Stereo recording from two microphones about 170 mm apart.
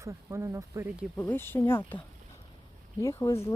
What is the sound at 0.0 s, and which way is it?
Speech, 15° right (ahead or behind).